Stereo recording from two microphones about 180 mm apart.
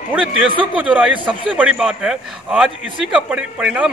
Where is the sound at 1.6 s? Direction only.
5° right (ahead or behind).